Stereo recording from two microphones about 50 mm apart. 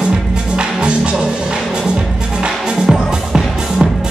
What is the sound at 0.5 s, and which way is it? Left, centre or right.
Music, centre.